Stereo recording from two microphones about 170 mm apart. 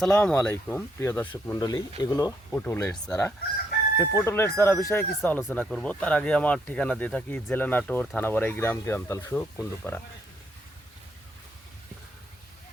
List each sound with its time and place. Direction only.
0.0 s speech: 5° left (ahead or behind)
1.5 s speech: 25° left (ahead or behind)
2.5 s speech: 10° left (ahead or behind)